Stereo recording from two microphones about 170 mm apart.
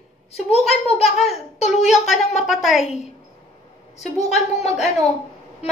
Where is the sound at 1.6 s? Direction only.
40° left (ahead or behind).